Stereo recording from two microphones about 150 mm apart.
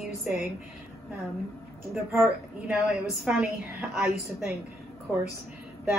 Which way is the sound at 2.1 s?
5° right (ahead or behind).